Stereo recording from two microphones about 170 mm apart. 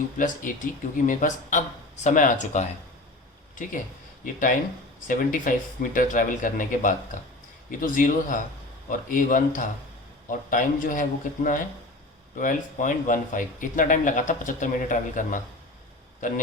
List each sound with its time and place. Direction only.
0.2 s speech: 50° left (ahead or behind)